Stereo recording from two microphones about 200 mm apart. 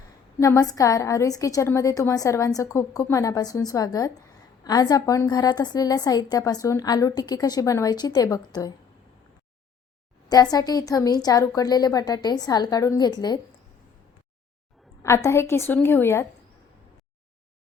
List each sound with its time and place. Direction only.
0.3 s a woman's voice: 15° left (ahead or behind)
10.2 s a woman's voice: 20° left (ahead or behind)
15.0 s a woman's voice: 15° left (ahead or behind)